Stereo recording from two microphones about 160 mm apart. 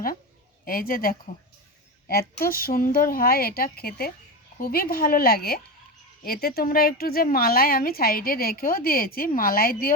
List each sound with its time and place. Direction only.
0.6 s a woman's voice: 65° left (ahead or behind)